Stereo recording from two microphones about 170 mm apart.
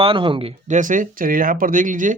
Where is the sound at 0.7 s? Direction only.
50° right (ahead or behind).